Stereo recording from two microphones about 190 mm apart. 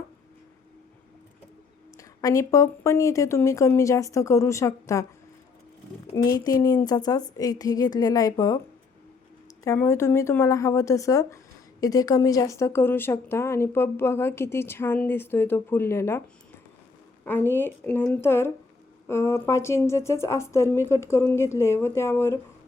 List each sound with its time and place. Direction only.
2.0 s speech: 15° left (ahead or behind)
6.2 s a woman's voice: 20° left (ahead or behind)
9.6 s speech: 15° left (ahead or behind)
17.2 s speech: 10° left (ahead or behind)